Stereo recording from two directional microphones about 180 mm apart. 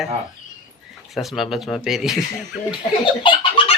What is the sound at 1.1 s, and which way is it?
Speech, centre (ahead or behind).